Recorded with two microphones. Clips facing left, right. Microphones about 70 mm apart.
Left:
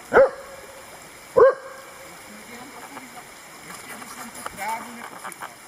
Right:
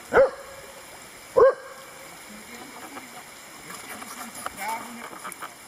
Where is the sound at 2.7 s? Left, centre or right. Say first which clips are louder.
Left 1 dB; centre.